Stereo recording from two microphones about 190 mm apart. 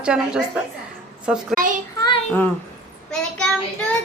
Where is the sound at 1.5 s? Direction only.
45° right (ahead or behind).